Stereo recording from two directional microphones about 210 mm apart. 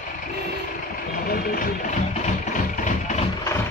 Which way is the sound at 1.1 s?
45° left (ahead or behind).